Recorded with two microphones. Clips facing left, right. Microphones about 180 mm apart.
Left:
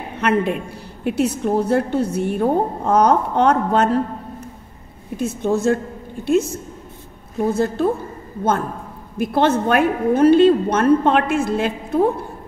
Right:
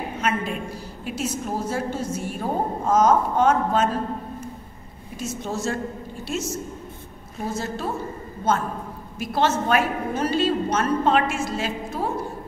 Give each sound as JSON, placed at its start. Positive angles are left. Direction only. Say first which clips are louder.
{"t": 0.2, "sound": "a woman's voice", "louder": "left 8 dB", "side_deg": 60}
{"t": 5.1, "sound": "a woman's voice", "louder": "left 9 dB", "side_deg": 55}
{"t": 9.1, "sound": "a woman's voice", "louder": "left 6 dB", "side_deg": 55}